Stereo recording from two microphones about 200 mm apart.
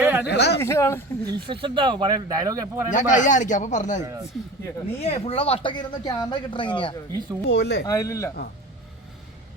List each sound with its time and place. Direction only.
0.0 s a sound: 5° right (ahead or behind)
0.3 s speech: 55° left (ahead or behind)
0.6 s speech: 15° left (ahead or behind)
1.3 s speech: 25° right (ahead or behind)
2.9 s a man's voice: 40° left (ahead or behind)
7.1 s speech: 20° right (ahead or behind)
7.4 s speech: 60° left (ahead or behind)
7.9 s speech: 15° left (ahead or behind)